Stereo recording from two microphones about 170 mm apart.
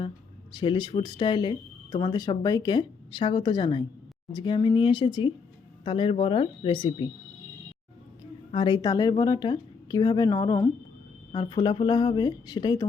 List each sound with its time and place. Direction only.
0.5 s speech: 30° left (ahead or behind)
8.5 s speech: 25° left (ahead or behind)